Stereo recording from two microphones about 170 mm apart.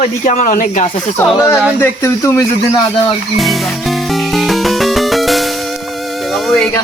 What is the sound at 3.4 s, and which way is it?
Music, centre (ahead or behind).